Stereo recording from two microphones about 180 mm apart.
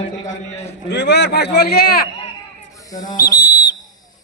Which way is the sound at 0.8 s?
70° left (ahead or behind).